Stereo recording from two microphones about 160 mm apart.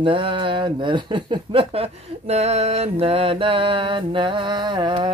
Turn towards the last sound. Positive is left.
turn(degrees=-30)  # may be behind; listen again after turning